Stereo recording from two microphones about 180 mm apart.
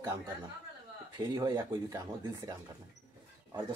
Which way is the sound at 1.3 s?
20° right (ahead or behind).